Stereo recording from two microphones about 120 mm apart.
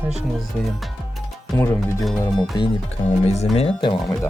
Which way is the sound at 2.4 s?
40° left (ahead or behind).